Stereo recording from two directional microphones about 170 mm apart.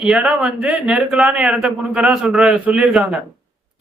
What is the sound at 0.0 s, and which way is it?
Speech, 5° right (ahead or behind).